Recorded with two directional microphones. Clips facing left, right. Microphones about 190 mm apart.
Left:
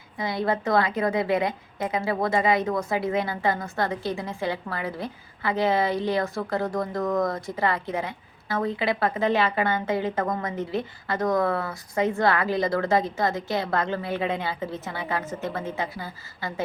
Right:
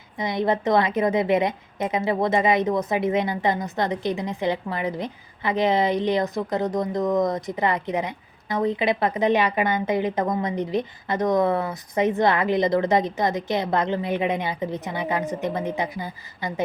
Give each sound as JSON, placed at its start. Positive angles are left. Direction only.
{"t": 0.2, "sound": "a woman's voice", "side_deg": -20}